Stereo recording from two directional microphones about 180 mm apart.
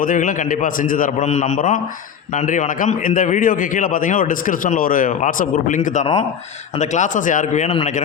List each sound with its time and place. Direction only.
0.0 s a man's voice: 50° left (ahead or behind)